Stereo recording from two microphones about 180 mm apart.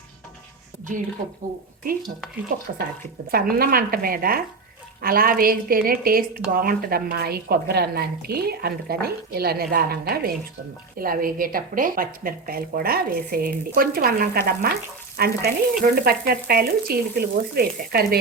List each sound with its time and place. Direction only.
1.8 s speech: 55° right (ahead or behind)
3.3 s a woman's voice: 55° right (ahead or behind)